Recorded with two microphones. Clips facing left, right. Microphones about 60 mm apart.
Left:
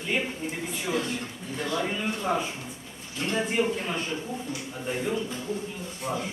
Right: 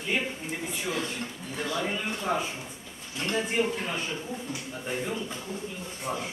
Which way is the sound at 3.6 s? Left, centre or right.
Centre.